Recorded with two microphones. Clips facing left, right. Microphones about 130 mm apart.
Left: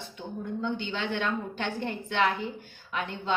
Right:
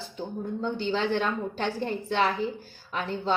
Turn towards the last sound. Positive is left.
turn(degrees=-35)  # may be behind; listen again after turning